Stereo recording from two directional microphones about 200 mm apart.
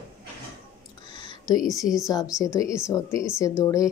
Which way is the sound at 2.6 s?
15° left (ahead or behind).